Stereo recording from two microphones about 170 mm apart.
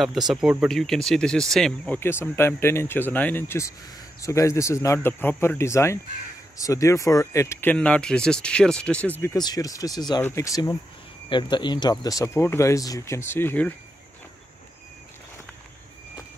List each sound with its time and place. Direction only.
0.3 s speech: 5° right (ahead or behind)
9.2 s speech: 20° left (ahead or behind)